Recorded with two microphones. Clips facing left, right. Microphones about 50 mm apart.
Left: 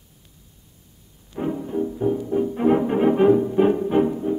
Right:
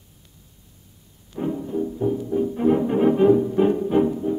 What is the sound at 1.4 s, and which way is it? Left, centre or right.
Music, left.